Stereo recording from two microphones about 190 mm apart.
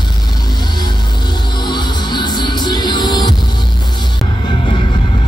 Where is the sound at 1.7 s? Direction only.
25° left (ahead or behind).